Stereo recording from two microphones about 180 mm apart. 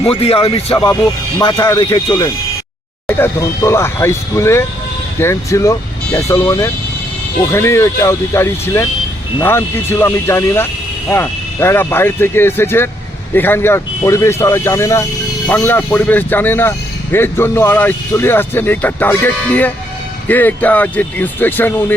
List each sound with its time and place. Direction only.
0.0 s speech: 35° left (ahead or behind)
3.1 s speech: 15° left (ahead or behind)